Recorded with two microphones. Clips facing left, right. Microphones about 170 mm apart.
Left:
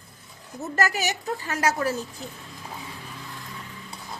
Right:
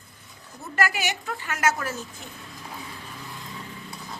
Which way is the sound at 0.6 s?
40° left (ahead or behind).